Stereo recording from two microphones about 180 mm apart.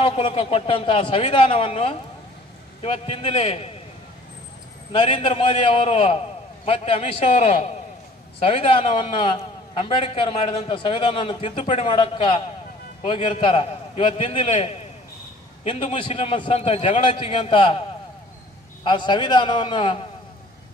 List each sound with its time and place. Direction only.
0.0 s a man's voice: 35° left (ahead or behind)
4.9 s a man's voice: 30° left (ahead or behind)
18.9 s a man's voice: 25° left (ahead or behind)